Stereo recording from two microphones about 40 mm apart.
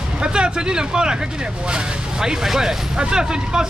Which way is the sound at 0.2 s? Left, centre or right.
Right.